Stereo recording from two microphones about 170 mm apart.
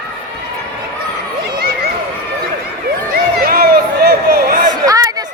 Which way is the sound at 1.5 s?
65° right (ahead or behind).